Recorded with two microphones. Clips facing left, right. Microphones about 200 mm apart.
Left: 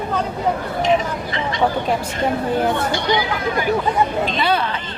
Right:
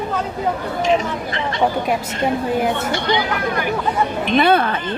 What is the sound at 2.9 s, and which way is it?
Speech, 55° right (ahead or behind).